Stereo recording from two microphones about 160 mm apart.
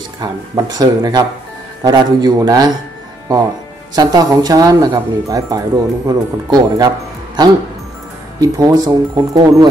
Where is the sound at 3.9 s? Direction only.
25° right (ahead or behind).